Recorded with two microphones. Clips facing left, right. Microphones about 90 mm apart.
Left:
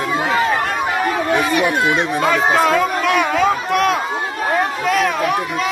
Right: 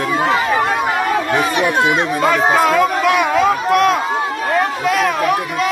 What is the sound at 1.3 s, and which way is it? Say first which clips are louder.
Speech: left 2 dB; 20° right (ahead or behind).